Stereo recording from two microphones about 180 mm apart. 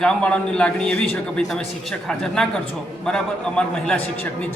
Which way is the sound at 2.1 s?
5° left (ahead or behind).